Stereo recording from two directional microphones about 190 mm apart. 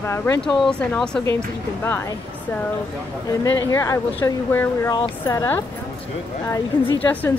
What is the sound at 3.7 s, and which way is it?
Speech, 15° left (ahead or behind).